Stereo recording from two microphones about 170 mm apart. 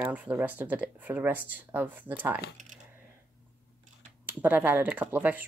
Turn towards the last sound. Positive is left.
turn(degrees=-10)  # may be behind; listen again after turning